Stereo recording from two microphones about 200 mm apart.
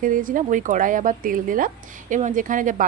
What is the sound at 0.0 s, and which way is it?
Speech, 45° right (ahead or behind).